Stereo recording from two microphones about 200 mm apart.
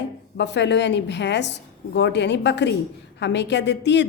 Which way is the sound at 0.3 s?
60° left (ahead or behind).